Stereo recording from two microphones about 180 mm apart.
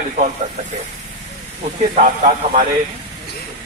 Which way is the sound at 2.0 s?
45° right (ahead or behind).